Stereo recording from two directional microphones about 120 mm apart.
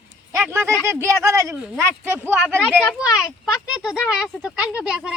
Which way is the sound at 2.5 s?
5° left (ahead or behind).